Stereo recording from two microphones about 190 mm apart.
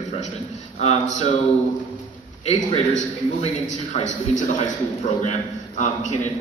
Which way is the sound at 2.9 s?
40° left (ahead or behind).